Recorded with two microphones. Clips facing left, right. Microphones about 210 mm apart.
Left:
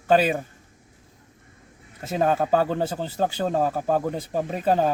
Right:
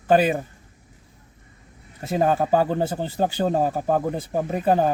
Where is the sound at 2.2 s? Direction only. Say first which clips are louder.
Right 1 dB; 10° right (ahead or behind).